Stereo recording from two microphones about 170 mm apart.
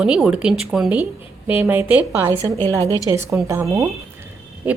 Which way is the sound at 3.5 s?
20° right (ahead or behind).